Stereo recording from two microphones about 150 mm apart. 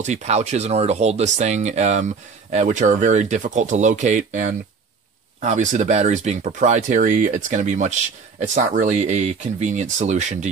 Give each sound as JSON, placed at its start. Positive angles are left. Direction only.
{"t": 0.0, "sound": "speech", "side_deg": -50}